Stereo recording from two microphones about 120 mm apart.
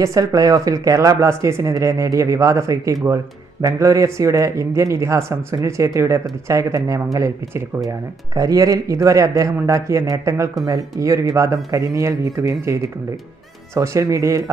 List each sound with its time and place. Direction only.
0.0 s speech: 30° right (ahead or behind)